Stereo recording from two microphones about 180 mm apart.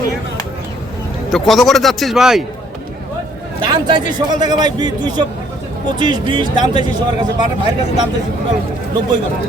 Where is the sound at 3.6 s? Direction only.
25° right (ahead or behind).